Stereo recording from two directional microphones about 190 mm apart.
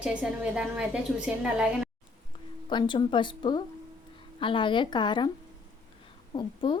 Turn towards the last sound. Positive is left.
turn(degrees=25)  # may be behind; listen again after turning